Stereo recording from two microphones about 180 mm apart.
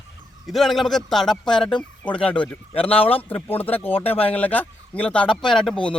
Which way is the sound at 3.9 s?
30° left (ahead or behind).